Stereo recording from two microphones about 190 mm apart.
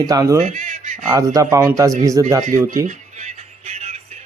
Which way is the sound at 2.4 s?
45° right (ahead or behind).